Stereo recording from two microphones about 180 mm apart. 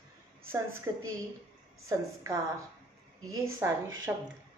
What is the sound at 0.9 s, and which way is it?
Speech, 15° right (ahead or behind).